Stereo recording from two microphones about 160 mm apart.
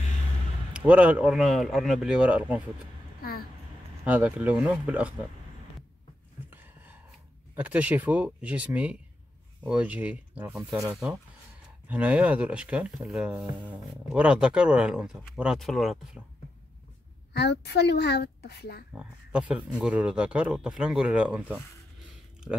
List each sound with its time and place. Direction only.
0.7 s speech: 10° right (ahead or behind)
3.2 s a sound: 70° left (ahead or behind)
4.0 s speech: 10° right (ahead or behind)
6.5 s gasp: 10° right (ahead or behind)
7.5 s speech: 10° right (ahead or behind)
17.3 s a woman's voice: 90° left
18.9 s speech: 5° right (ahead or behind)